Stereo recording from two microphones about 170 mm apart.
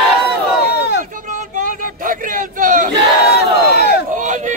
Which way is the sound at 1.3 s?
50° right (ahead or behind).